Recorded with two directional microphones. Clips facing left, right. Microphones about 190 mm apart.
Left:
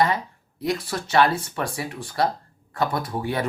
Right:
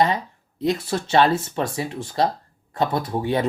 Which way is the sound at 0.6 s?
25° right (ahead or behind).